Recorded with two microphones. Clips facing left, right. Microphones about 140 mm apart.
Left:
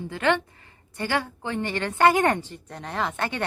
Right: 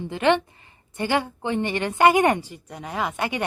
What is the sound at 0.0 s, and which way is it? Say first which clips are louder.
Speech: right 3 dB; 20° right (ahead or behind).